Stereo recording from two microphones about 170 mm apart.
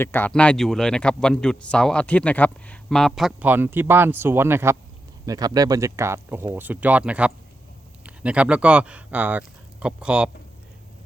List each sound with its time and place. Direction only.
0.0 s speech: 10° left (ahead or behind); by 10.2 s 5° right (ahead or behind)